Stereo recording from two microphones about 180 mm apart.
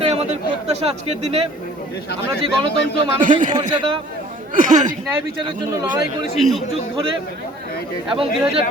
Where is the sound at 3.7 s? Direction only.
30° right (ahead or behind).